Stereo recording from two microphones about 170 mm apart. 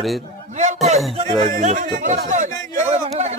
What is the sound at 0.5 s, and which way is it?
Speech, 40° right (ahead or behind).